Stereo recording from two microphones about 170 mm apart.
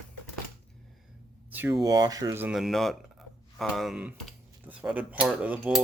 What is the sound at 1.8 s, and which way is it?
Speech, 20° right (ahead or behind).